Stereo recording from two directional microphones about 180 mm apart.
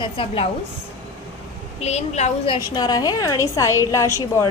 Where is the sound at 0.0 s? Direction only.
30° left (ahead or behind).